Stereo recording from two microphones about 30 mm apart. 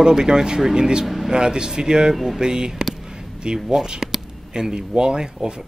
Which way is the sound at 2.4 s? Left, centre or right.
Right.